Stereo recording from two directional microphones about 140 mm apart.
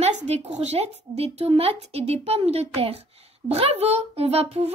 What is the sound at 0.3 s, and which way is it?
A child's voice, 50° right (ahead or behind).